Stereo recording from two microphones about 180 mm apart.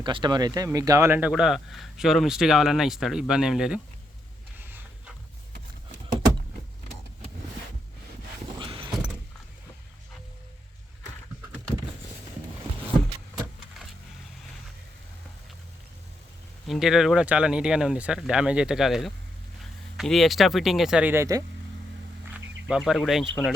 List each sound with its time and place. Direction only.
0.0 s speech: 25° right (ahead or behind); by 3.8 s 5° right (ahead or behind)
8.5 s vehicle: 30° right (ahead or behind)
16.6 s speech: centre (ahead or behind); by 21.4 s 15° right (ahead or behind)
22.7 s speech: centre (ahead or behind)